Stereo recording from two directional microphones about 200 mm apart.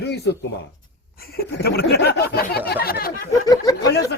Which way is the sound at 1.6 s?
55° left (ahead or behind).